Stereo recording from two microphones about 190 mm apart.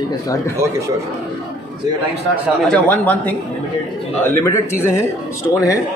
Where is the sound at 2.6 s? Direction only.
10° left (ahead or behind).